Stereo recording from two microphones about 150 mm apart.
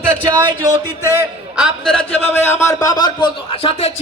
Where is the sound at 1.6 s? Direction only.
5° right (ahead or behind).